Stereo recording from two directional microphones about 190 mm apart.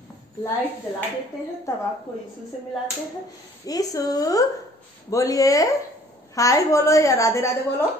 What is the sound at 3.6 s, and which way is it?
A woman's voice, 20° left (ahead or behind).